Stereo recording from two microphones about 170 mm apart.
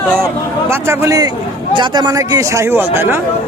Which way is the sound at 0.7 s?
15° right (ahead or behind).